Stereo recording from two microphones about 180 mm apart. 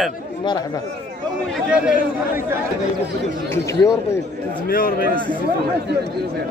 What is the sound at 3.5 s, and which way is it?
Speech, 15° left (ahead or behind).